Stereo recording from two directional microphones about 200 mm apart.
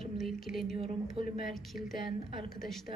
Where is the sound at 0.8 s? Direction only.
30° right (ahead or behind).